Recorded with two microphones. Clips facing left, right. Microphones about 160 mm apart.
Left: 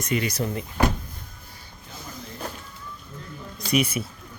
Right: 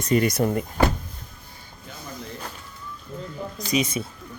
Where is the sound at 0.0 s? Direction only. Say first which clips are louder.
Right 5 dB; 45° right (ahead or behind).